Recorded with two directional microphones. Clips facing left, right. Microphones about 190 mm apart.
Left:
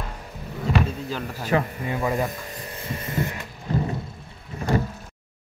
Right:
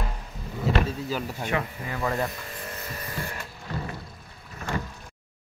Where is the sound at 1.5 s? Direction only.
35° left (ahead or behind).